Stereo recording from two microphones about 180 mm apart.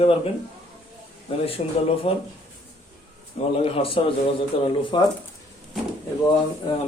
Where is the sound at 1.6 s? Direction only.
35° left (ahead or behind).